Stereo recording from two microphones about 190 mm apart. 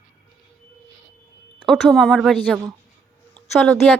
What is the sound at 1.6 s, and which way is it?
A woman's voice, centre (ahead or behind).